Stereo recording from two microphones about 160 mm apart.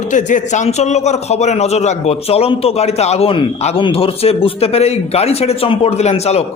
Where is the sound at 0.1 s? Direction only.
50° left (ahead or behind).